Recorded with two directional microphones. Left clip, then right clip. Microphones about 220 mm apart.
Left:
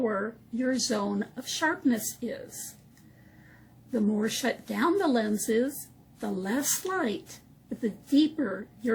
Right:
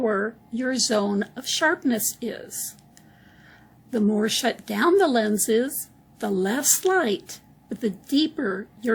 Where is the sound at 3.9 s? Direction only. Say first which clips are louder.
Right 6 dB; 45° right (ahead or behind).